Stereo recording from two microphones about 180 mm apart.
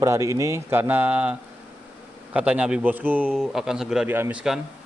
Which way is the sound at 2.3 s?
5° right (ahead or behind).